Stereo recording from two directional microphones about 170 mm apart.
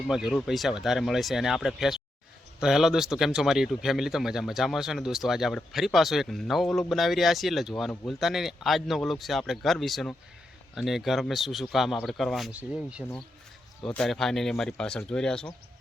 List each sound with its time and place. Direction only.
0.1 s speech: centre (ahead or behind)